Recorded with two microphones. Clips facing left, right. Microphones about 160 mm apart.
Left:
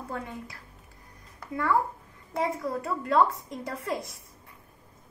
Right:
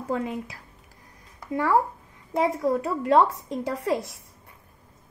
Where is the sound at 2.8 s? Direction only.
75° right (ahead or behind).